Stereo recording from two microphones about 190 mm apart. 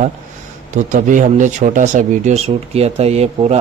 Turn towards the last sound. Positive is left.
turn(degrees=-35)  # may be behind; listen again after turning